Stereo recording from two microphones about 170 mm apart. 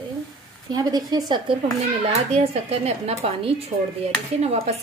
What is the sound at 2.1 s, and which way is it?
Speech, 40° right (ahead or behind).